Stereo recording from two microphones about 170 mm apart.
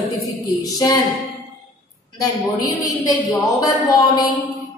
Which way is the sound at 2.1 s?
20° left (ahead or behind).